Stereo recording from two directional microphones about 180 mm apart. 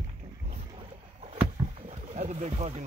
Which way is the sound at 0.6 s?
30° right (ahead or behind).